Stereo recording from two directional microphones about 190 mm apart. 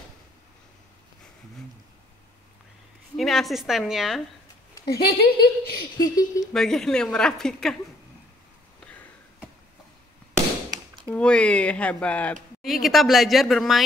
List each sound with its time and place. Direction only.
3.2 s speech: centre (ahead or behind)
4.8 s a woman's voice: 55° left (ahead or behind)
5.9 s speech: 20° left (ahead or behind)
6.5 s speech: 5° left (ahead or behind)
11.1 s speech: 5° left (ahead or behind)